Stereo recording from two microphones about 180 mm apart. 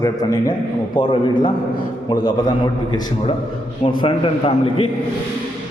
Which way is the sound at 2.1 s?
20° left (ahead or behind).